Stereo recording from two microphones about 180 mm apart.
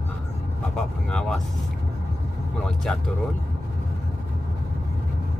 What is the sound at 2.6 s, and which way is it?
Speech, 5° left (ahead or behind).